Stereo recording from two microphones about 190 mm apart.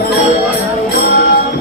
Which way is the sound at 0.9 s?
55° left (ahead or behind).